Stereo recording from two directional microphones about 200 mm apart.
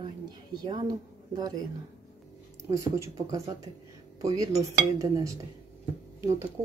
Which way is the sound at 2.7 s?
15° right (ahead or behind).